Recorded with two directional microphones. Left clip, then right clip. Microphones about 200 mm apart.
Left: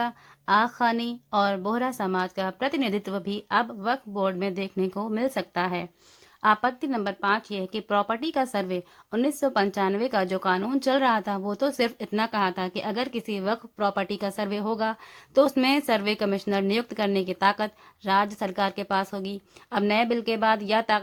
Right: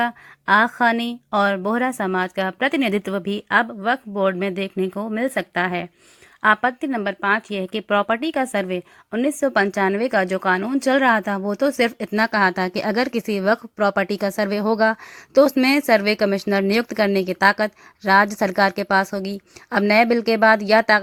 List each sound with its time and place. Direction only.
0.0 s speech: 20° right (ahead or behind)